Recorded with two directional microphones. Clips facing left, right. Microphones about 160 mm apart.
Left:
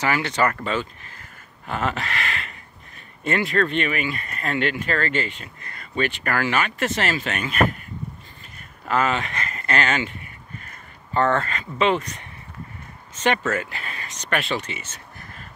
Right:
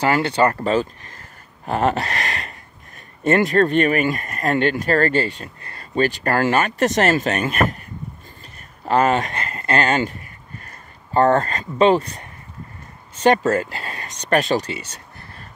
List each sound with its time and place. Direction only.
0.0 s speech: 30° right (ahead or behind)
8.8 s speech: 40° right (ahead or behind)